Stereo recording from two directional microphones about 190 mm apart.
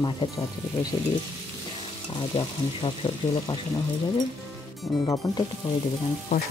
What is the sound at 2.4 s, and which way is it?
Speech, 25° left (ahead or behind).